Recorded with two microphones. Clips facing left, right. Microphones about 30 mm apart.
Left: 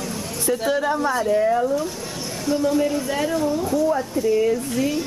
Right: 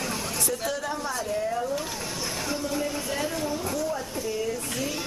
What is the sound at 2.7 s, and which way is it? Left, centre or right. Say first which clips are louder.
Speech: left 8 dB; centre.